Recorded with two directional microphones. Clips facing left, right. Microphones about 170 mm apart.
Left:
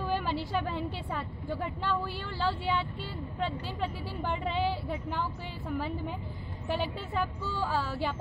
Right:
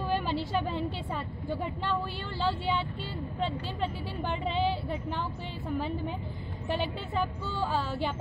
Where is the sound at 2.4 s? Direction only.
25° right (ahead or behind).